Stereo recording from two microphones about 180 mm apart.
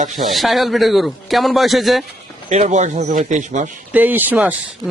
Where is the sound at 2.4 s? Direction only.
40° right (ahead or behind).